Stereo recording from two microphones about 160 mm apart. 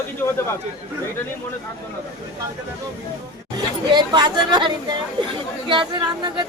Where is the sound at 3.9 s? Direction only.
25° right (ahead or behind).